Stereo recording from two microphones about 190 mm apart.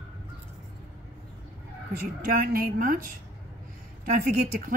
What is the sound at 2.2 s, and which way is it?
Speech, 50° right (ahead or behind).